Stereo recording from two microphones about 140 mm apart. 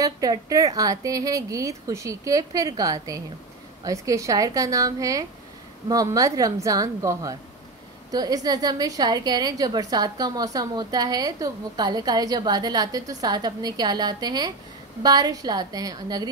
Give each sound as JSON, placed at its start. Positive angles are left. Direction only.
{"t": 0.0, "sound": "a woman's voice", "side_deg": -25}